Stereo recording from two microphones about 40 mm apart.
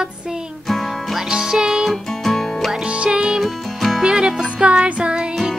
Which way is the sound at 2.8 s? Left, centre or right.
Right.